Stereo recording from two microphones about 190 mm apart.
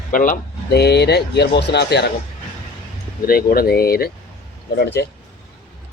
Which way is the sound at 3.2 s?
50° left (ahead or behind).